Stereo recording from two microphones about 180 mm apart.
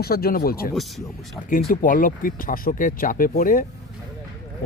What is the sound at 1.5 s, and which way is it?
Speech, 55° left (ahead or behind).